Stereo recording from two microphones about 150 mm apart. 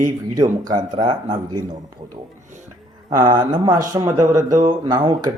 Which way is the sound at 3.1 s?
30° right (ahead or behind).